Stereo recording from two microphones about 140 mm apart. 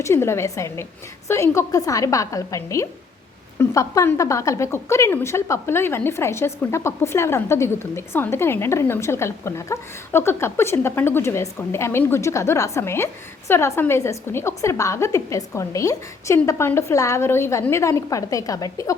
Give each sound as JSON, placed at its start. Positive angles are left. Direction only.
{"t": 0.0, "sound": "a woman's voice", "side_deg": 20}